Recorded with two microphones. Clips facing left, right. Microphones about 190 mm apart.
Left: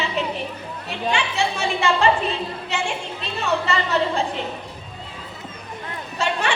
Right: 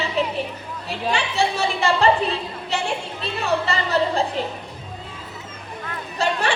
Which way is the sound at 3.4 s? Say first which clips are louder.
Even; 35° right (ahead or behind).